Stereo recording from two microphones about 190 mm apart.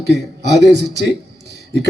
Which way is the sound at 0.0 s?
60° right (ahead or behind).